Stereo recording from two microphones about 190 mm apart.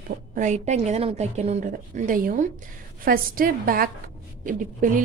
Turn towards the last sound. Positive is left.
turn(degrees=-45)  # may be behind; listen again after turning